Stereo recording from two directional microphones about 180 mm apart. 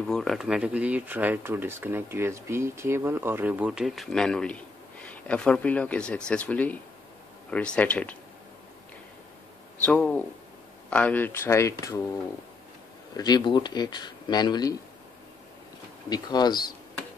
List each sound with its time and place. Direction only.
0.0 s speech: centre (ahead or behind)
9.8 s speech: 5° left (ahead or behind)
13.1 s speech: 25° left (ahead or behind)
16.1 s speech: 25° left (ahead or behind)